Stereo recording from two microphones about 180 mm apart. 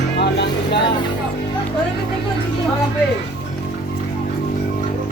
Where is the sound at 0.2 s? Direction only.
70° left (ahead or behind).